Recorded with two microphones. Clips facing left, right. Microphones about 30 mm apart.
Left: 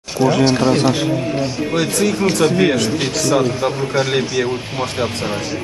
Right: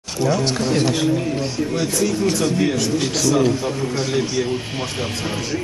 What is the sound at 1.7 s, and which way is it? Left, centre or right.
Speech, left.